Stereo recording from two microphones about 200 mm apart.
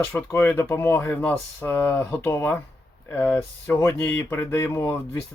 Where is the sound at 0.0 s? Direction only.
15° left (ahead or behind).